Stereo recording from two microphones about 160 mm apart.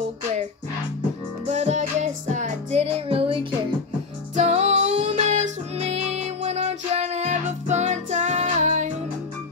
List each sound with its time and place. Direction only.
1.5 s music: 45° right (ahead or behind)